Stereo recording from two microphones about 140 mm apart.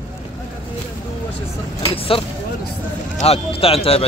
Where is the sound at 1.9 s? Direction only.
40° left (ahead or behind).